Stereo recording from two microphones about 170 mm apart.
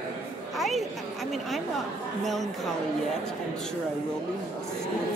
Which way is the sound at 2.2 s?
Centre (ahead or behind).